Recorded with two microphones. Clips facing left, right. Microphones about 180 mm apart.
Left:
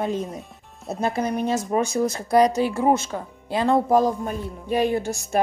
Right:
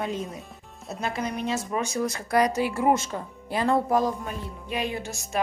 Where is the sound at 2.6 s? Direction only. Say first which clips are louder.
Left 4 dB; 5° right (ahead or behind).